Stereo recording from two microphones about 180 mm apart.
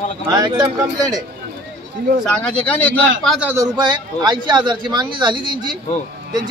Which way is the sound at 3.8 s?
25° right (ahead or behind).